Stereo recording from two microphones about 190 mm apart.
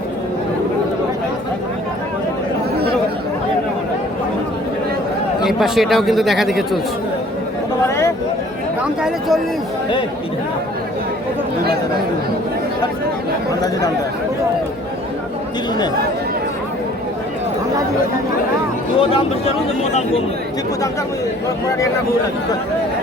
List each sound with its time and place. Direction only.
5.4 s speech: centre (ahead or behind)
7.9 s a sound: 15° left (ahead or behind)
8.8 s speech: 5° right (ahead or behind)
18.9 s speech: 30° left (ahead or behind)